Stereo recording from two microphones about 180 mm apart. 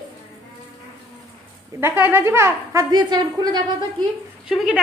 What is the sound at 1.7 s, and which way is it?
A woman's voice, 10° right (ahead or behind).